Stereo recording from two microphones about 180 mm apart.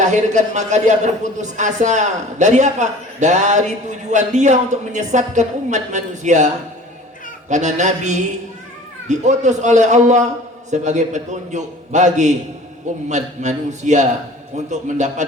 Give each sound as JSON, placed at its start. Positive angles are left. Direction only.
{"t": 0.0, "sound": "a man's voice", "side_deg": -40}
{"t": 7.5, "sound": "a man's voice", "side_deg": -40}